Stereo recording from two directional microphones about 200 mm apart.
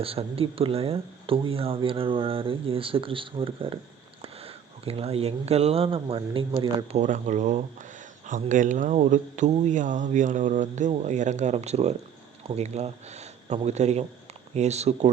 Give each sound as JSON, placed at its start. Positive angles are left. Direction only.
{"t": 0.0, "sound": "speech", "side_deg": -30}
{"t": 7.0, "sound": "speech", "side_deg": -40}